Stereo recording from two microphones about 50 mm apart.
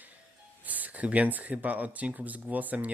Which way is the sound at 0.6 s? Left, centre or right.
Right.